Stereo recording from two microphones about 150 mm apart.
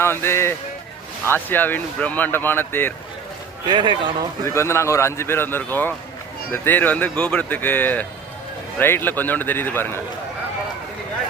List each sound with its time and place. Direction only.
0.0 s speech: 15° left (ahead or behind)
3.7 s speech: 30° right (ahead or behind)
4.4 s speech: 15° left (ahead or behind)